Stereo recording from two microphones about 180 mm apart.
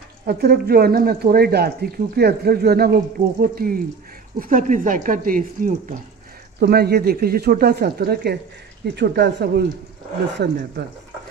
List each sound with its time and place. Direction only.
0.3 s speech: 60° right (ahead or behind)
6.6 s speech: 65° right (ahead or behind)